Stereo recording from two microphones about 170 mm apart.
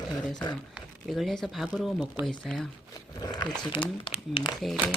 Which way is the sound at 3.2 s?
25° left (ahead or behind).